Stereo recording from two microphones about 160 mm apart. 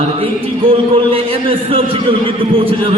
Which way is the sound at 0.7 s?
35° right (ahead or behind).